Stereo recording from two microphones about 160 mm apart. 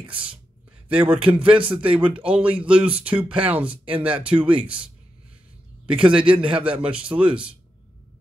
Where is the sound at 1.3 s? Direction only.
10° right (ahead or behind).